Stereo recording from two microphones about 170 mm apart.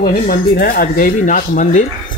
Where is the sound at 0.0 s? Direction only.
60° left (ahead or behind).